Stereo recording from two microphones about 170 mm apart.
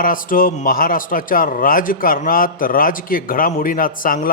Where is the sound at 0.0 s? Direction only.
55° left (ahead or behind).